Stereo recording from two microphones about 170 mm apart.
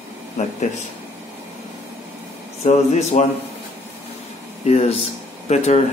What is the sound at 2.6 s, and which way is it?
Speech, 40° left (ahead or behind).